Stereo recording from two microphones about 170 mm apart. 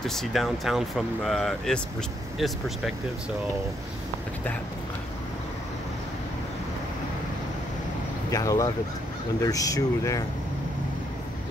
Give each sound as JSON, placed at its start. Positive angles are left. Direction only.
{"t": 0.0, "sound": "speech", "side_deg": 0}
{"t": 8.3, "sound": "speech", "side_deg": 20}